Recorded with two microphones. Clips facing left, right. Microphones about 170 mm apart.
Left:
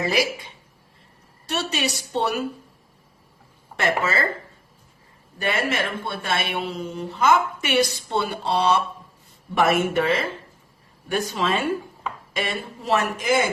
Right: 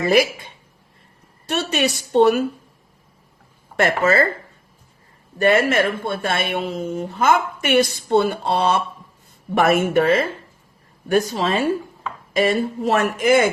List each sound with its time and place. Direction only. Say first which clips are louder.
0.0 s a woman's voice: right 6 dB; 55° right (ahead or behind)
1.5 s a woman's voice: right 5 dB; 55° right (ahead or behind)
3.8 s speech: right 6 dB; 50° right (ahead or behind)
5.4 s speech: right 8 dB; 50° right (ahead or behind)
11.1 s speech: right 5 dB; 40° right (ahead or behind)